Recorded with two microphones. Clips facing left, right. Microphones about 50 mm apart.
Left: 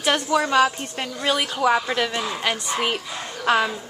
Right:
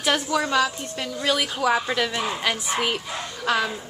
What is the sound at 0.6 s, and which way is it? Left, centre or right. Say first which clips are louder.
Speech: left 4 dB; left.